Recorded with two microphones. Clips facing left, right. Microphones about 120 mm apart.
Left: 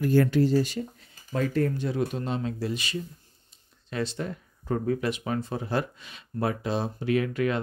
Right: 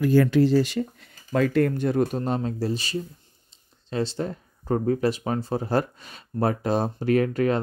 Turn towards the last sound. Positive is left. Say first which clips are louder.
# right 4 dB
turn(degrees=-40)  # may be behind; listen again after turning